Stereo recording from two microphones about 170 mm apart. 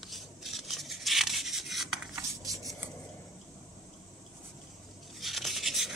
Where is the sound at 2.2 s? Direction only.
20° right (ahead or behind).